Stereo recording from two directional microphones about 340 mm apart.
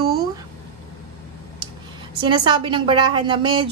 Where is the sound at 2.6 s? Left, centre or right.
Centre.